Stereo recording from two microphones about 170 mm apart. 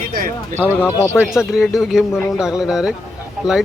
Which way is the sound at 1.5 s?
Centre (ahead or behind).